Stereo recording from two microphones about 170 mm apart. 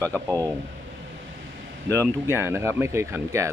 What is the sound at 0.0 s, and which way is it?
Speech, 15° right (ahead or behind).